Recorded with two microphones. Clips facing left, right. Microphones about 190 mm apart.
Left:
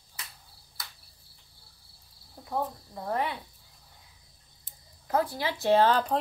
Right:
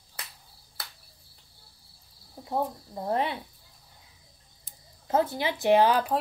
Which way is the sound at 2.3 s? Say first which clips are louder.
Right 2 dB; 20° right (ahead or behind).